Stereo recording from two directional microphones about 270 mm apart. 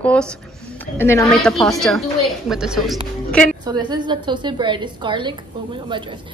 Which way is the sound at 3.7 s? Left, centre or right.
Centre.